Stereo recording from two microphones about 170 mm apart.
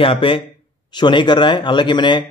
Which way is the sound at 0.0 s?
30° left (ahead or behind).